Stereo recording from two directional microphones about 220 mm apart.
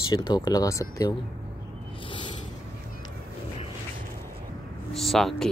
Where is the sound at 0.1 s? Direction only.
20° left (ahead or behind).